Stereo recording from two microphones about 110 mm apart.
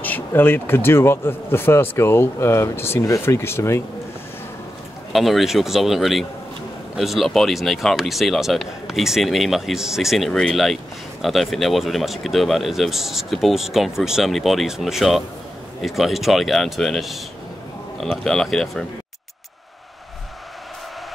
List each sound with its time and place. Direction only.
0.0 s speech: 15° left (ahead or behind)
5.1 s speech: centre (ahead or behind)